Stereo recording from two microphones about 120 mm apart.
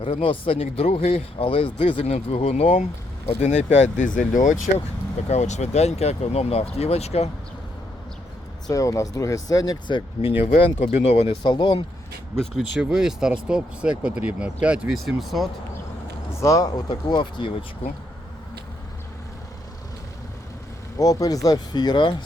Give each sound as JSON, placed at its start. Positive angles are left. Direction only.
{"t": 0.0, "sound": "speech", "side_deg": 45}
{"t": 2.0, "sound": "speech", "side_deg": 65}
{"t": 5.3, "sound": "speech", "side_deg": 70}
{"t": 8.6, "sound": "speech", "side_deg": 30}
{"t": 10.2, "sound": "speech", "side_deg": 50}
{"t": 10.6, "sound": "speech", "side_deg": 65}
{"t": 11.4, "sound": "speech", "side_deg": 40}
{"t": 12.8, "sound": "speech", "side_deg": -5}
{"t": 16.3, "sound": "speech", "side_deg": 25}
{"t": 21.0, "sound": "speech", "side_deg": 30}